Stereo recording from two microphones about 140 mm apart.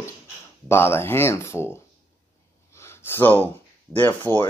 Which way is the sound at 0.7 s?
15° left (ahead or behind).